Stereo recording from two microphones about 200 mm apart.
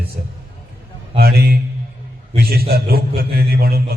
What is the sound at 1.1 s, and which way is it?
A man's voice, 50° right (ahead or behind).